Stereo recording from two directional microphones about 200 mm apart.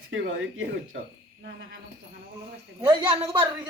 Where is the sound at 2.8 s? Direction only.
25° right (ahead or behind).